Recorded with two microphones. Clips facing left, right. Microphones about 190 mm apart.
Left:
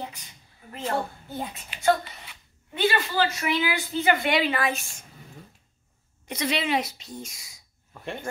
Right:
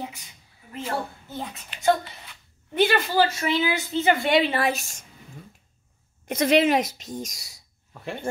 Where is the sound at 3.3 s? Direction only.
25° right (ahead or behind); by 5.0 s 40° right (ahead or behind).